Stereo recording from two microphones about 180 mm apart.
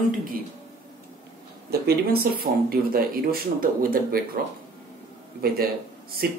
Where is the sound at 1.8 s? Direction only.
60° right (ahead or behind).